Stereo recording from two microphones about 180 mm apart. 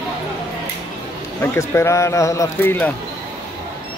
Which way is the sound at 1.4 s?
15° left (ahead or behind).